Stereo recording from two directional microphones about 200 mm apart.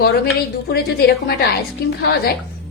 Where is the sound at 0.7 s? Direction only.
55° left (ahead or behind).